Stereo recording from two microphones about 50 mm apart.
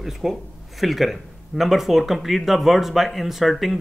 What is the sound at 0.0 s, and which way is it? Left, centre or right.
Speech, centre.